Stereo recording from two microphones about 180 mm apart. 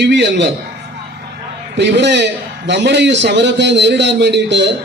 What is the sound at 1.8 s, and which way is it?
A man's voice, 75° right (ahead or behind).